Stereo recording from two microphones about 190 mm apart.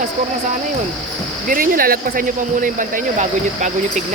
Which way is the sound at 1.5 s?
50° right (ahead or behind).